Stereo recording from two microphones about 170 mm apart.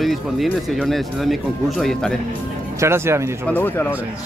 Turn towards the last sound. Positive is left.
turn(degrees=10)  # may be behind; listen again after turning